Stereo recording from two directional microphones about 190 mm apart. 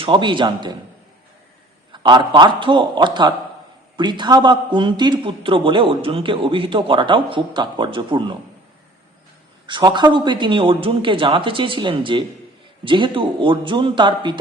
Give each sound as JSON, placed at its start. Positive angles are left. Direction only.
{"t": 0.0, "sound": "a man's voice", "side_deg": -25}
{"t": 1.9, "sound": "a man's voice", "side_deg": -25}
{"t": 9.6, "sound": "a man's voice", "side_deg": -25}